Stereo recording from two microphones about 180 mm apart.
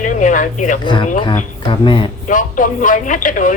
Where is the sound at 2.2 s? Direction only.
45° left (ahead or behind).